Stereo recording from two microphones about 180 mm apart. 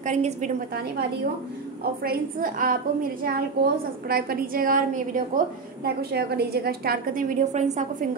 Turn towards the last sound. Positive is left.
turn(degrees=-40)  # may be behind; listen again after turning